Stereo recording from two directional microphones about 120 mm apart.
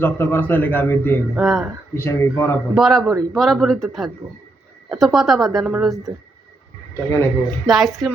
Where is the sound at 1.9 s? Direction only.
25° left (ahead or behind).